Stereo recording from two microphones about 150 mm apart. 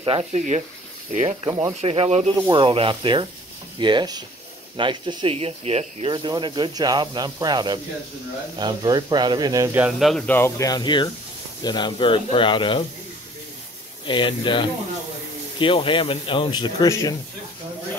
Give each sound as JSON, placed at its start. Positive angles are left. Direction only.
{"t": 0.0, "sound": "speech", "side_deg": -40}
{"t": 1.8, "sound": "speech", "side_deg": -45}
{"t": 9.8, "sound": "speech", "side_deg": 0}
{"t": 10.2, "sound": "speech", "side_deg": 15}
{"t": 14.0, "sound": "speech", "side_deg": 35}